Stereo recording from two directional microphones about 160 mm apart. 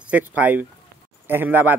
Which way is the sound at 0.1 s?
10° right (ahead or behind).